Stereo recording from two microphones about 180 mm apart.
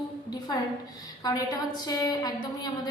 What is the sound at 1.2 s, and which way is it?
A woman's voice, 20° left (ahead or behind).